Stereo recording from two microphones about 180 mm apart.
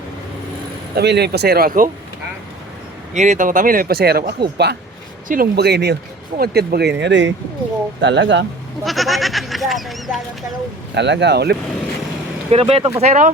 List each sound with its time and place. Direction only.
0.9 s speech: 65° right (ahead or behind)
3.2 s speech: 45° right (ahead or behind); by 6.9 s 65° right (ahead or behind)
7.0 s speech: 80° right
8.8 s speech: centre (ahead or behind)
10.9 s speech: 75° right (ahead or behind)
12.5 s speech: 35° right (ahead or behind)